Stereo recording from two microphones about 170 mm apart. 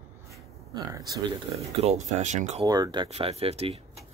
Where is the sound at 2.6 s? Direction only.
20° right (ahead or behind).